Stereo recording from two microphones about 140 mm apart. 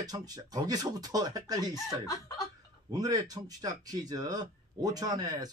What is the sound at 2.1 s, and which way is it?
Speech, 25° left (ahead or behind).